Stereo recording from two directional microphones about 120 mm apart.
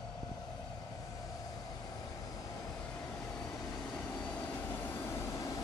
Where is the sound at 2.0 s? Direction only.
30° left (ahead or behind).